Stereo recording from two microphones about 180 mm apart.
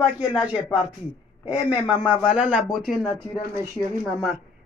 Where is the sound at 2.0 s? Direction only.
5° right (ahead or behind).